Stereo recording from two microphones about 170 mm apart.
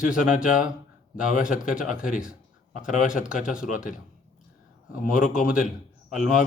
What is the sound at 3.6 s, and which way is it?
Speech, 50° left (ahead or behind).